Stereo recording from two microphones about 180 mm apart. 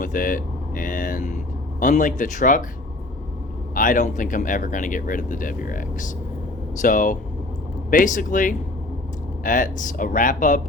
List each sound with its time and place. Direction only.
0.0 s vehicle: 50° left (ahead or behind)
1.8 s speech: 45° left (ahead or behind)
3.8 s speech: 45° left (ahead or behind)